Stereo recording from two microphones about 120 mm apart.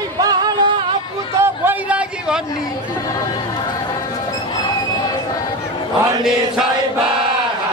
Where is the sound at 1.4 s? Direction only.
15° right (ahead or behind).